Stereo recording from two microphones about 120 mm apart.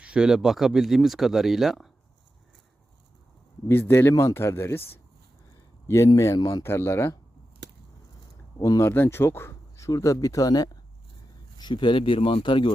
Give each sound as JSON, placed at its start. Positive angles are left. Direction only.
{"t": 0.0, "sound": "speech", "side_deg": -5}
{"t": 3.7, "sound": "speech", "side_deg": 20}
{"t": 6.1, "sound": "speech", "side_deg": 30}
{"t": 8.8, "sound": "speech", "side_deg": 20}